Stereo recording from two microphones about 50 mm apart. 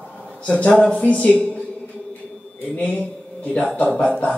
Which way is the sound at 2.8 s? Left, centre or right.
Left.